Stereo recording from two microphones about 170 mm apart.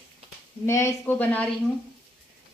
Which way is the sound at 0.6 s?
15° left (ahead or behind).